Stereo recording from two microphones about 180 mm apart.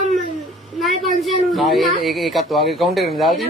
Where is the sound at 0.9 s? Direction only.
35° right (ahead or behind).